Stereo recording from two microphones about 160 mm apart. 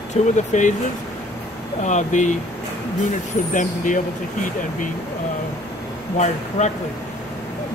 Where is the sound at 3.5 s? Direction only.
55° left (ahead or behind).